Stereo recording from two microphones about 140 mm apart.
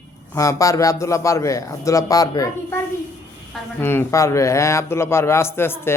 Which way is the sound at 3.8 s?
15° left (ahead or behind).